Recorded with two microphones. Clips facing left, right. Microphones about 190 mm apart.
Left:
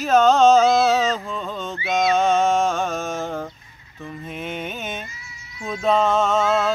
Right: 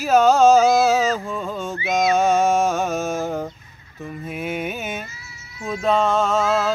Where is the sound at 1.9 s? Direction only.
5° right (ahead or behind).